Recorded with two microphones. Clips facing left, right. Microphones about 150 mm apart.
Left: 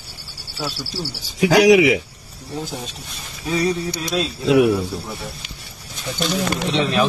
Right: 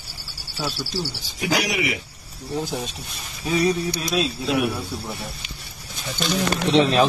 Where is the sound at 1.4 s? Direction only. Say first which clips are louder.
Left 11 dB; 90° left.